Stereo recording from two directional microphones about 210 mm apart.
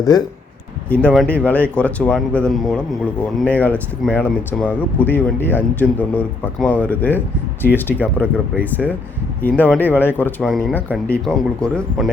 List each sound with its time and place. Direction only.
0.1 s speech: 20° left (ahead or behind)
0.9 s speech: 5° left (ahead or behind)
7.9 s speech: 5° right (ahead or behind)
8.6 s speech: 10° left (ahead or behind)